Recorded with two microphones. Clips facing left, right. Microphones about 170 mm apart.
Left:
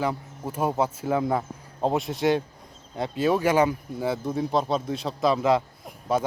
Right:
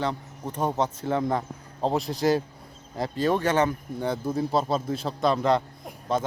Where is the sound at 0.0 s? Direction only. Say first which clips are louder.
Left 1 dB; 5° left (ahead or behind).